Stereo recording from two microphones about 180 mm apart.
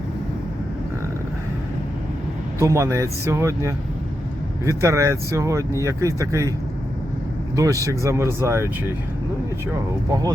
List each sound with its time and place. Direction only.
2.6 s speech: 15° right (ahead or behind)
7.5 s speech: 20° right (ahead or behind)
10.1 s speech: 20° right (ahead or behind)